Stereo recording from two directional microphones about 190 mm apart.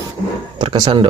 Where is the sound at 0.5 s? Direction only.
20° right (ahead or behind).